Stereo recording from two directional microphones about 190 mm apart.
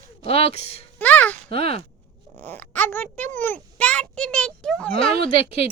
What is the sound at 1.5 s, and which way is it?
Speech, 30° left (ahead or behind).